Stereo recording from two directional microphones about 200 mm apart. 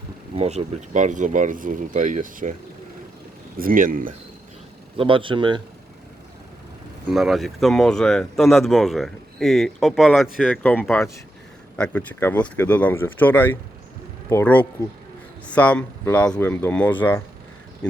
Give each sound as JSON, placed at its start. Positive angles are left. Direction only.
{"t": 0.3, "sound": "speech", "side_deg": -30}
{"t": 3.6, "sound": "speech", "side_deg": -45}
{"t": 4.9, "sound": "speech", "side_deg": -25}
{"t": 7.1, "sound": "speech", "side_deg": 0}